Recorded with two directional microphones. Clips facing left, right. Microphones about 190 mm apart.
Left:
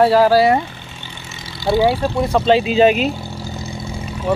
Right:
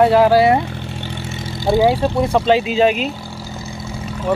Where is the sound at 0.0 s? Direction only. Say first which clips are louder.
Even; 15° right (ahead or behind).